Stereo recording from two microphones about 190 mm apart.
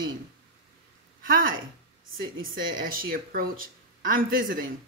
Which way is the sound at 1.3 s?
45° right (ahead or behind).